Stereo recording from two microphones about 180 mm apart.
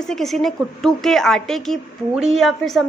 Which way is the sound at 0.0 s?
Centre (ahead or behind).